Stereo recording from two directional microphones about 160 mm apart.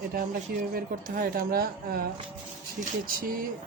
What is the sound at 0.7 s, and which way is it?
Speech, 60° right (ahead or behind).